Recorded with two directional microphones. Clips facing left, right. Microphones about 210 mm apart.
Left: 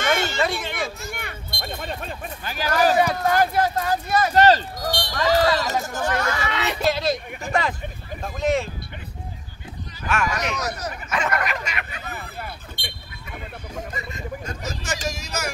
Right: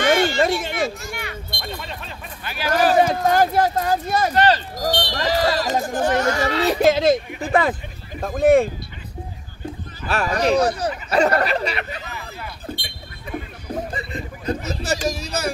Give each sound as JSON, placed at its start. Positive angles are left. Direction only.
{"t": 0.1, "sound": "speech", "side_deg": -50}
{"t": 1.1, "sound": "speech", "side_deg": 50}
{"t": 2.7, "sound": "speech", "side_deg": -45}
{"t": 4.4, "sound": "speech", "side_deg": 40}
{"t": 4.8, "sound": "speech", "side_deg": -25}
{"t": 5.9, "sound": "speech", "side_deg": -45}
{"t": 8.2, "sound": "speech", "side_deg": -50}
{"t": 10.0, "sound": "speech", "side_deg": -35}
{"t": 12.0, "sound": "a sound", "side_deg": 50}
{"t": 13.9, "sound": "a sound", "side_deg": -35}